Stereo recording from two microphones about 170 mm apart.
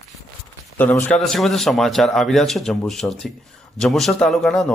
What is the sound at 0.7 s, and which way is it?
A man's voice, 10° left (ahead or behind).